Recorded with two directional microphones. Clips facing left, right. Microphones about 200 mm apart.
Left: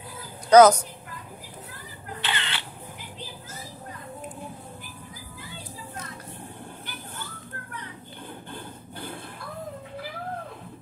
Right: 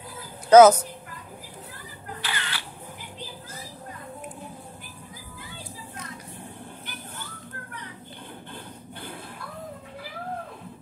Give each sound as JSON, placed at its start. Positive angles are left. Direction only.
{"t": 0.5, "sound": "a woman's voice", "side_deg": -5}
{"t": 2.2, "sound": "camera", "side_deg": 25}